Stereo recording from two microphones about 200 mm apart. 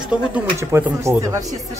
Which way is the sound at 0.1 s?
10° right (ahead or behind).